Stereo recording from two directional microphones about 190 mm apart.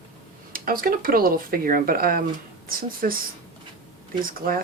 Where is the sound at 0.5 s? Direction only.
50° right (ahead or behind).